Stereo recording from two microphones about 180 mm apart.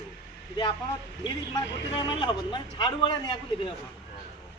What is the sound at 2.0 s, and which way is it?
A man's voice, 25° left (ahead or behind).